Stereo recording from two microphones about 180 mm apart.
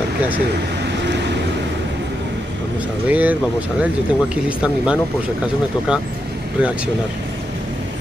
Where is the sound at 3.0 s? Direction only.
10° right (ahead or behind).